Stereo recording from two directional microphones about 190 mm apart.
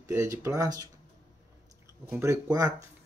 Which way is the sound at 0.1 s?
15° right (ahead or behind).